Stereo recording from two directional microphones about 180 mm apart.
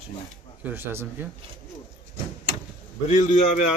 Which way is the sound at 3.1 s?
40° left (ahead or behind).